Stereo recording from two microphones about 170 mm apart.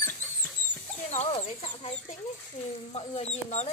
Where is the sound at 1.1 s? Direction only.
40° left (ahead or behind).